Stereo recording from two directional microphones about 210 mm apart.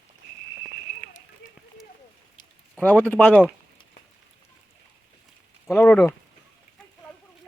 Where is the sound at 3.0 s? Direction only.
5° left (ahead or behind).